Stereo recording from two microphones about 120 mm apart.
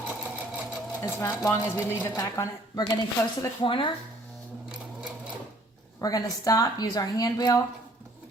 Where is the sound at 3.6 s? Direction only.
45° left (ahead or behind).